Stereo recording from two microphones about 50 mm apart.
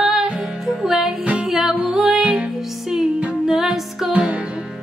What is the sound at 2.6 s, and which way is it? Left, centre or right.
Music, centre.